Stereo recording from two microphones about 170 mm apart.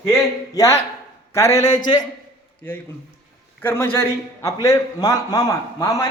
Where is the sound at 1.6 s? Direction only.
45° left (ahead or behind).